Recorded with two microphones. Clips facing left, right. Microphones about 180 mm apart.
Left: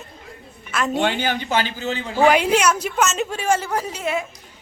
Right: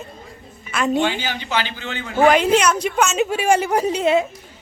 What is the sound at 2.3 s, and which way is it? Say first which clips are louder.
A woman's voice: right 2 dB; 10° left (ahead or behind).